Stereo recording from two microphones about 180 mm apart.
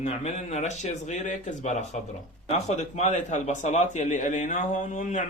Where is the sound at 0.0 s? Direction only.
35° left (ahead or behind).